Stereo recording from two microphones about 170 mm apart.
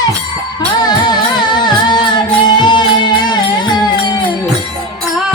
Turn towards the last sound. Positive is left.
turn(degrees=25)  # may be behind; listen again after turning